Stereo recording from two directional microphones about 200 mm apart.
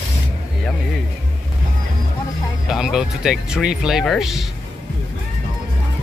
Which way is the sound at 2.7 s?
Centre (ahead or behind).